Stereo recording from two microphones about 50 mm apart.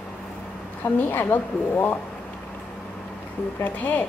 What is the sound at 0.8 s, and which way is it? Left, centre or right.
A woman's voice, left.